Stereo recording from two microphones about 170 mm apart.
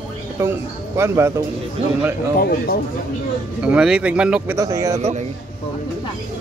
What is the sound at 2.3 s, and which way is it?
Speech, 60° left (ahead or behind).